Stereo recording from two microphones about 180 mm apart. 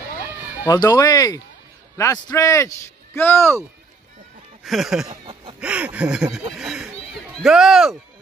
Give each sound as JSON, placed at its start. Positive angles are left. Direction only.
{"t": 0.7, "sound": "a man's voice", "side_deg": 20}
{"t": 4.6, "sound": "speech", "side_deg": 0}
{"t": 5.1, "sound": "speech", "side_deg": -30}
{"t": 5.6, "sound": "speech", "side_deg": -5}